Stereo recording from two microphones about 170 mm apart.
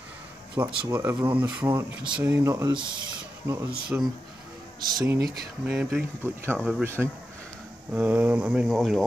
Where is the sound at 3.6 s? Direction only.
5° right (ahead or behind).